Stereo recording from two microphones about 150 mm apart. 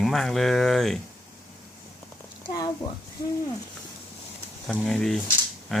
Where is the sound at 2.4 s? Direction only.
25° left (ahead or behind).